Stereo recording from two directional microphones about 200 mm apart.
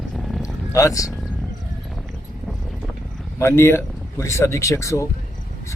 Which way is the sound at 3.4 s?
15° left (ahead or behind).